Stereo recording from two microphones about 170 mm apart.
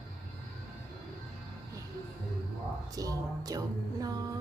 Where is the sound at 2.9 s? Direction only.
20° right (ahead or behind).